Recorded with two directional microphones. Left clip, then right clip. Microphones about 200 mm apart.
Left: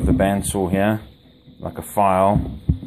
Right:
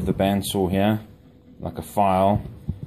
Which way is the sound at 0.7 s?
5° left (ahead or behind).